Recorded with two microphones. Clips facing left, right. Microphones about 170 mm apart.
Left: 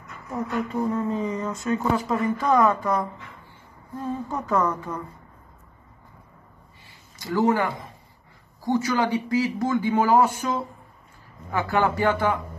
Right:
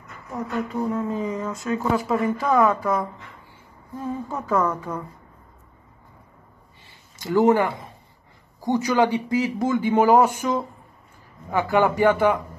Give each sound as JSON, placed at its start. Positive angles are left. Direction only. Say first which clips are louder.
{"t": 0.5, "sound": "speech", "louder": "even", "side_deg": 0}
{"t": 7.2, "sound": "speech", "louder": "right 4 dB", "side_deg": -20}